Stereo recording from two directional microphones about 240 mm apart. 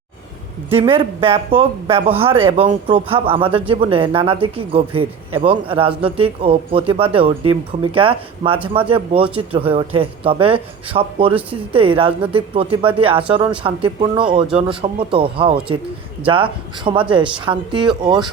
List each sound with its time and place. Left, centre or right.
1.2 s speech: right